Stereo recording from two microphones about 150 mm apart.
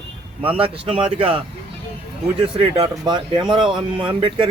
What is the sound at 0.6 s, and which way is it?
Speech, 40° right (ahead or behind).